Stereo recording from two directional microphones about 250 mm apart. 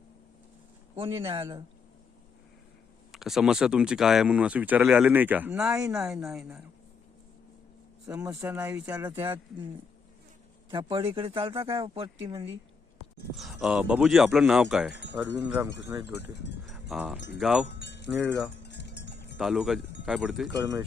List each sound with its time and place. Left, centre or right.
0.9 s speech: right
3.1 s speech: centre
8.0 s speech: centre
10.7 s speech: centre
13.3 s speech: centre
16.6 s a sound: centre
17.2 s speech: left
17.4 s speech: centre
17.7 s wind chime: left
18.1 s speech: centre
18.6 s wind chime: left
19.4 s speech: centre